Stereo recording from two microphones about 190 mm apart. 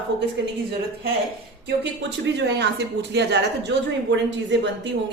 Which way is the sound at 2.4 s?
65° right (ahead or behind).